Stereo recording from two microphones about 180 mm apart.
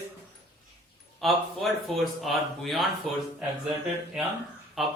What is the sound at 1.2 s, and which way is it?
A man's voice, centre (ahead or behind).